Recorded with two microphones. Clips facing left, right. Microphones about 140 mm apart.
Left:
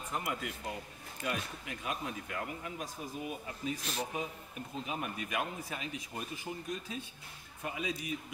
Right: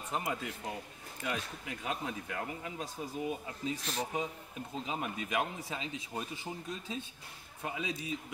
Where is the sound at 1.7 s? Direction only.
30° right (ahead or behind).